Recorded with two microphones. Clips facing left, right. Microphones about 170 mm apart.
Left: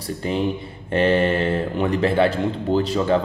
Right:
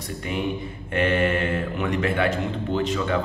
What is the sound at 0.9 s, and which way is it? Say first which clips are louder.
A man's voice: left 4 dB; 30° left (ahead or behind).